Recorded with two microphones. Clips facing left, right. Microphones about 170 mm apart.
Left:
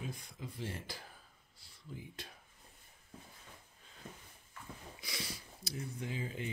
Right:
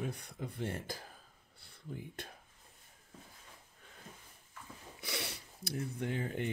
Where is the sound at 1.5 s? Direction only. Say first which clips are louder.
Right 4 dB; 60° right (ahead or behind).